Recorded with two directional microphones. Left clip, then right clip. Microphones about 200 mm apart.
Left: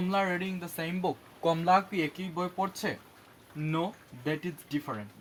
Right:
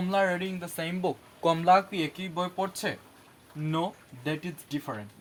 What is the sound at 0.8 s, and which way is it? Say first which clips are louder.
Speech: right 2 dB; 35° right (ahead or behind).